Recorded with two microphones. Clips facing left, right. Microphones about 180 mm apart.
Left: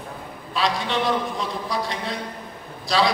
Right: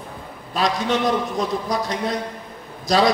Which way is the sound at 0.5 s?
45° right (ahead or behind).